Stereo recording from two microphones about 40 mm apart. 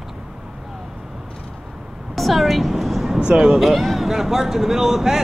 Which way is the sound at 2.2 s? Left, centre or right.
Centre.